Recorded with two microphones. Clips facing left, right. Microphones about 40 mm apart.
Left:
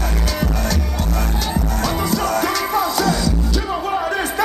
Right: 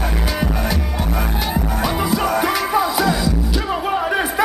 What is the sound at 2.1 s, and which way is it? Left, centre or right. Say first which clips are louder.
Music: right 1 dB; centre.